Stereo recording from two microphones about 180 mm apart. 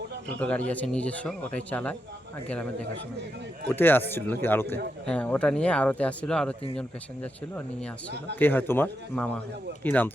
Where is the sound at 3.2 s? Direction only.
70° right (ahead or behind).